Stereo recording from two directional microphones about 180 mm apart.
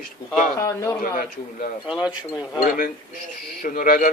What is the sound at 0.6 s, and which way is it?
Speech, 15° left (ahead or behind).